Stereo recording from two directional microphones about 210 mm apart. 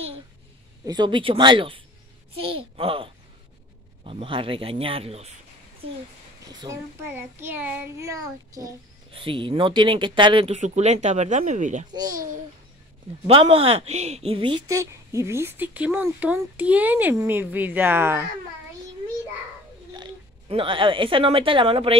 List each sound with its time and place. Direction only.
0.8 s speech: 20° right (ahead or behind)
6.5 s speech: 15° right (ahead or behind); by 11.8 s 35° right (ahead or behind)
11.9 s speech: 20° right (ahead or behind)
13.3 s speech: 25° right (ahead or behind); by 18.2 s 10° right (ahead or behind)
19.9 s speech: 25° right (ahead or behind)